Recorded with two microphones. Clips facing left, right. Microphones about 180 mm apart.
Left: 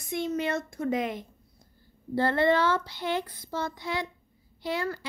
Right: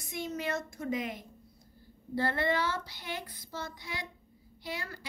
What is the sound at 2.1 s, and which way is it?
A woman's voice, 65° left (ahead or behind).